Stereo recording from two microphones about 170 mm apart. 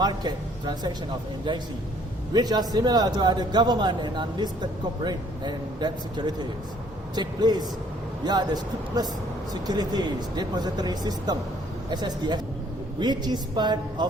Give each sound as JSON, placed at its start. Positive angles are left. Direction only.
{"t": 0.0, "sound": "a man's voice", "side_deg": -25}